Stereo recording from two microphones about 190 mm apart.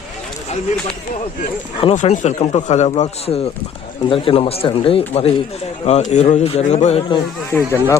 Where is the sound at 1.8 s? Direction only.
30° left (ahead or behind).